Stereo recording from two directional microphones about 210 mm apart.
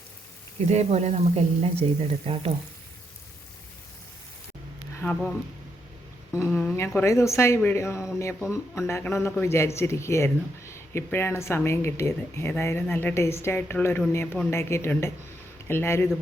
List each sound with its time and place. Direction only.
0.7 s speech: 30° right (ahead or behind)
4.9 s speech: 10° left (ahead or behind)
6.3 s speech: 15° left (ahead or behind)